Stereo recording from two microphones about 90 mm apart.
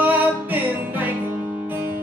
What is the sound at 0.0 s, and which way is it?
Music, 20° right (ahead or behind).